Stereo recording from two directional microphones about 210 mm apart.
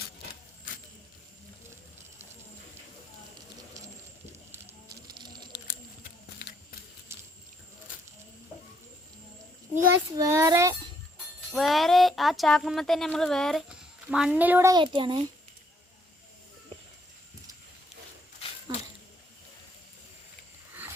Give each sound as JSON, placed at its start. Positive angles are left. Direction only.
{"t": 4.5, "sound": "music", "side_deg": -15}
{"t": 5.5, "sound": "patter", "side_deg": 40}
{"t": 7.1, "sound": "sink", "side_deg": -10}
{"t": 10.2, "sound": "speech", "side_deg": -15}
{"t": 11.5, "sound": "speech", "side_deg": 0}